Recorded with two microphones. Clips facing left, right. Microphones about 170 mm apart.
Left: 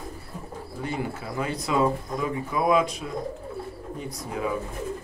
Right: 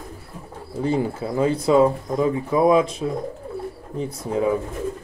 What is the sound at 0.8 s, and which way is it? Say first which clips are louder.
Speech: right 9 dB; 30° right (ahead or behind).